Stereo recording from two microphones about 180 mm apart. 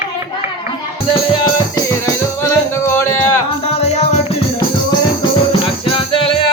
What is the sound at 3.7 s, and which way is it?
Music, 35° left (ahead or behind).